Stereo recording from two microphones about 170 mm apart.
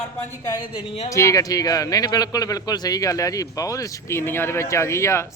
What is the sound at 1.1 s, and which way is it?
A man's voice, 20° left (ahead or behind).